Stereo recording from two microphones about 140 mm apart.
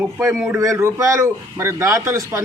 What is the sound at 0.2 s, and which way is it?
A man's voice, 20° right (ahead or behind).